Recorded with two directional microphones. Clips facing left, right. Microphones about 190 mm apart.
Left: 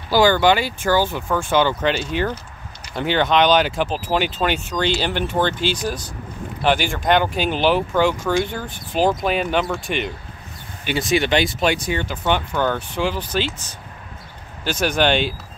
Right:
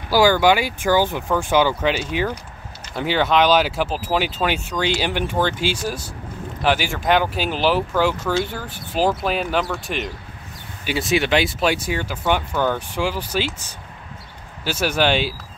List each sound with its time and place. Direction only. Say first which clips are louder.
0.1 s speech: even; 10° right (ahead or behind)